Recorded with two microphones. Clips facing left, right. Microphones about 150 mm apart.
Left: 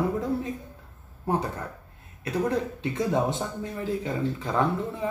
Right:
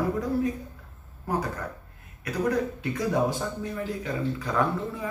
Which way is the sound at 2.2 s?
25° left (ahead or behind).